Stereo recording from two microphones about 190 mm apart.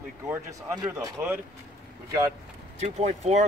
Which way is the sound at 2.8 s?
35° right (ahead or behind).